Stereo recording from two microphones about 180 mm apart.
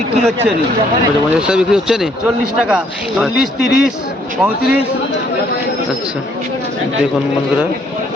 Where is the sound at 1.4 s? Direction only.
5° right (ahead or behind).